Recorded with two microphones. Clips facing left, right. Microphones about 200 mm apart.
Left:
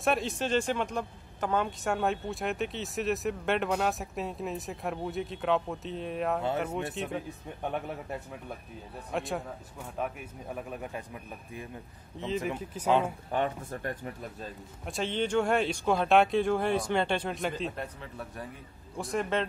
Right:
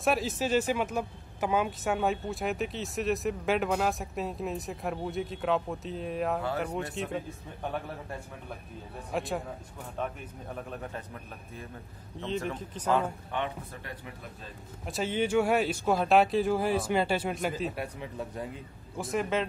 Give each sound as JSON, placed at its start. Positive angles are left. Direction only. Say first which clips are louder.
{"t": 0.0, "sound": "speech", "louder": "right 1 dB", "side_deg": 0}
{"t": 9.1, "sound": "speech", "louder": "right 1 dB", "side_deg": 0}
{"t": 12.2, "sound": "speech", "louder": "left 1 dB", "side_deg": 0}
{"t": 13.3, "sound": "speech", "louder": "left 4 dB", "side_deg": 45}
{"t": 14.9, "sound": "speech", "louder": "right 1 dB", "side_deg": -5}
{"t": 18.0, "sound": "speech", "louder": "right 4 dB", "side_deg": -15}
{"t": 18.9, "sound": "speech", "louder": "right 1 dB", "side_deg": 0}